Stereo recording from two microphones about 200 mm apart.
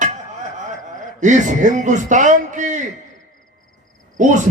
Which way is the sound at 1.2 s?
40° right (ahead or behind).